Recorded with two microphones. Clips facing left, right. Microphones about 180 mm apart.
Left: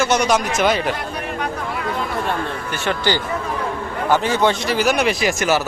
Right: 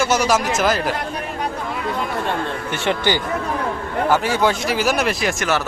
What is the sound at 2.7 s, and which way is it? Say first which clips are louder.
Speech: right 1 dB; 20° right (ahead or behind).